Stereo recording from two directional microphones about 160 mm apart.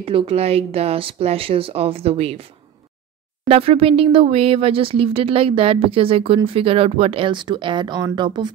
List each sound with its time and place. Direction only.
0.0 s speech: 35° right (ahead or behind)